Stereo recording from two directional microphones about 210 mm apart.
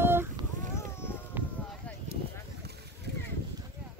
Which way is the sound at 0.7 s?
10° left (ahead or behind).